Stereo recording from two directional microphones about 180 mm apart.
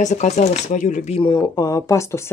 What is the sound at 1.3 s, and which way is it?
Speech, 15° left (ahead or behind).